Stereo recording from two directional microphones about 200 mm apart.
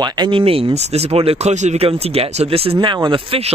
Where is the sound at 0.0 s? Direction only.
25° right (ahead or behind).